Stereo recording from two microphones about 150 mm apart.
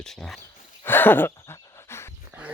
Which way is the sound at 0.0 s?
5° left (ahead or behind).